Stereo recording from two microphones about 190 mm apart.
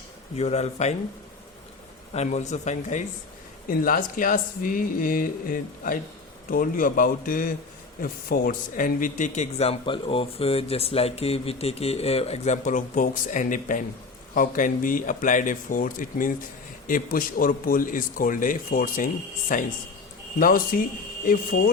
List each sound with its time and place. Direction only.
0.3 s speech: 35° left (ahead or behind)
2.1 s speech: 35° left (ahead or behind)